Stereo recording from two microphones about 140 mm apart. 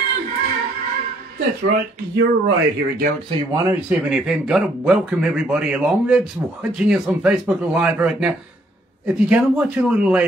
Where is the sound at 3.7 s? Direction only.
5° right (ahead or behind).